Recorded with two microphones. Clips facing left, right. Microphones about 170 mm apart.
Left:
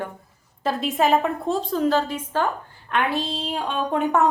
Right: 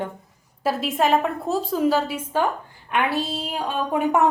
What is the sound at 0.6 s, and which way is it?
A woman's voice, centre (ahead or behind).